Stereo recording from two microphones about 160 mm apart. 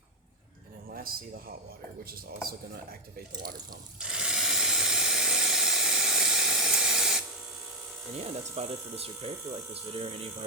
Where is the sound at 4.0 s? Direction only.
5° right (ahead or behind).